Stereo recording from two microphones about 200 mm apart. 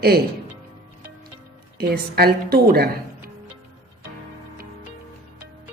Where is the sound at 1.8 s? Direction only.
50° right (ahead or behind).